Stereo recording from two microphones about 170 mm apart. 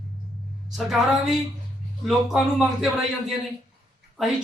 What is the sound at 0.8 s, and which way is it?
A woman's voice, centre (ahead or behind).